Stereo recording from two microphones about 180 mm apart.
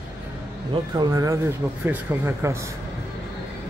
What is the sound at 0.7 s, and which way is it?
Speech, 25° right (ahead or behind).